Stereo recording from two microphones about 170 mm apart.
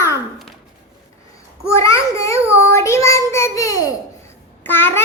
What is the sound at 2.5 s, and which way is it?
Child singing, 15° left (ahead or behind).